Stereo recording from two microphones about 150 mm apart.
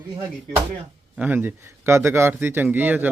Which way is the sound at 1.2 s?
15° right (ahead or behind).